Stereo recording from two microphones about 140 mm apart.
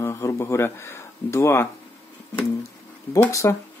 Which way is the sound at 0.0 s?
20° left (ahead or behind).